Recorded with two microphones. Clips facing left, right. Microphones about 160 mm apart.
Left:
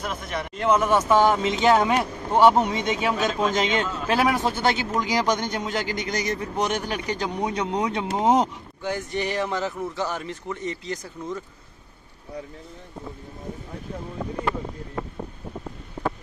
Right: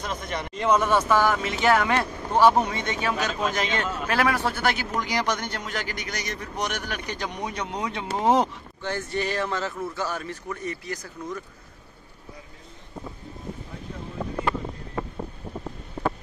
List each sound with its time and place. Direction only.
0.0 s speech: 5° left (ahead or behind)
1.0 s speech: 20° left (ahead or behind)
7.8 s speech: 20° left (ahead or behind)